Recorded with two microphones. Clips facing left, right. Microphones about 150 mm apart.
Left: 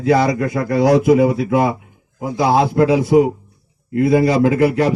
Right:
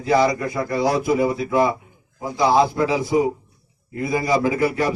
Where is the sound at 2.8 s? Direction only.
65° left (ahead or behind).